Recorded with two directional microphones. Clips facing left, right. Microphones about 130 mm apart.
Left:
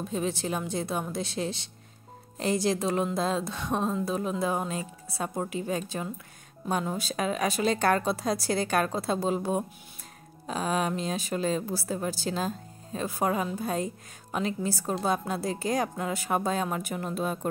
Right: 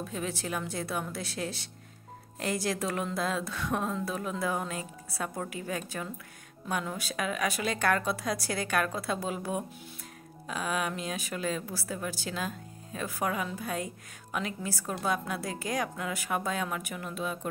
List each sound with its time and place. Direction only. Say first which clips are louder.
0.0 s a woman's voice: left 5 dB; 25° left (ahead or behind); by 17.5 s 40° left (ahead or behind)